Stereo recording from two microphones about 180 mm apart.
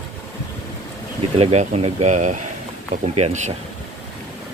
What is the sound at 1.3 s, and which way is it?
Speech, 35° right (ahead or behind).